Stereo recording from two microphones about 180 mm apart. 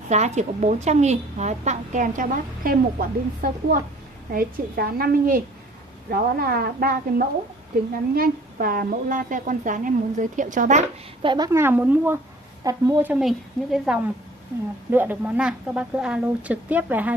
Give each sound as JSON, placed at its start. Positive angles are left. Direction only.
{"t": 0.1, "sound": "a woman's voice", "side_deg": -40}
{"t": 11.2, "sound": "a woman's voice", "side_deg": -20}
{"t": 13.1, "sound": "a woman's voice", "side_deg": 0}